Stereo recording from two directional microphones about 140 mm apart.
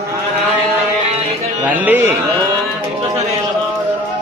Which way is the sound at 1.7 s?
10° right (ahead or behind).